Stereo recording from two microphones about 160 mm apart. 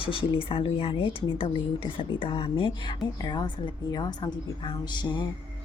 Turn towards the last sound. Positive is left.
turn(degrees=30)  # may be behind; listen again after turning